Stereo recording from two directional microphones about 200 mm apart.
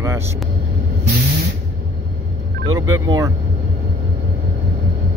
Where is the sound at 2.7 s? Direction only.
20° right (ahead or behind).